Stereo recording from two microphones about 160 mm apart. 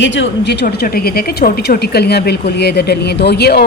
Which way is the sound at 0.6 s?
70° left (ahead or behind).